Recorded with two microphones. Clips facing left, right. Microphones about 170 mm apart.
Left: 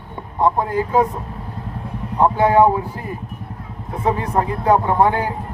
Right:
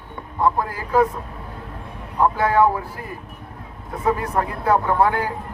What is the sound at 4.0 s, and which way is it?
Speech, 25° left (ahead or behind).